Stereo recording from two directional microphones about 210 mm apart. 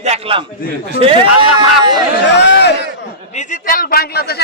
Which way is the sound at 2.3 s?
55° left (ahead or behind).